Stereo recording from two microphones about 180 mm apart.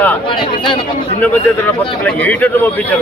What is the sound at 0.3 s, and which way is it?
Speech, 25° left (ahead or behind).